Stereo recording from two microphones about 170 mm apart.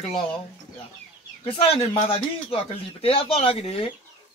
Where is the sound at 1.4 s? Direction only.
35° left (ahead or behind).